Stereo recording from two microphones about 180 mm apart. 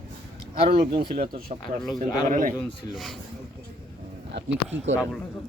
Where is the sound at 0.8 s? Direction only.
30° right (ahead or behind).